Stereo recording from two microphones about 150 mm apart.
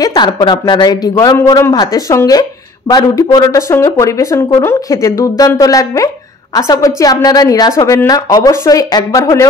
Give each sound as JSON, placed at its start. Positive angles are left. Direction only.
{"t": 0.0, "sound": "speech", "side_deg": 25}